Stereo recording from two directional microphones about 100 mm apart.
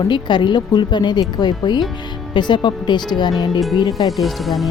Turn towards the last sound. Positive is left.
turn(degrees=0)  # may be behind; listen again after turning